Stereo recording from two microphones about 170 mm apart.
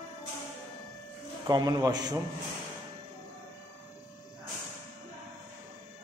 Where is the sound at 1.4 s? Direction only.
20° right (ahead or behind).